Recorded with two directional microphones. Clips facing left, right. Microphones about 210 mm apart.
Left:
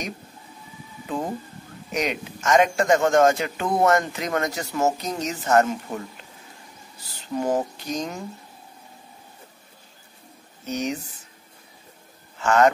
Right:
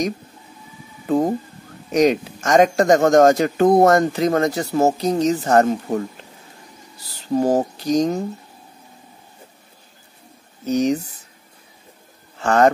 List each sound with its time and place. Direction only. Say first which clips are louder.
1.0 s a man's voice: right 10 dB; 40° right (ahead or behind)
7.3 s a man's voice: right 6 dB; 35° right (ahead or behind)
10.7 s a man's voice: right 9 dB; 35° right (ahead or behind)
12.4 s a man's voice: right 2 dB; 35° right (ahead or behind)